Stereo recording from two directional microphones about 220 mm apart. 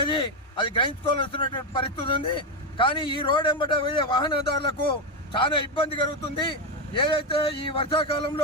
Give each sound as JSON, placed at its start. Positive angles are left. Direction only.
{"t": 0.0, "sound": "speech", "side_deg": 20}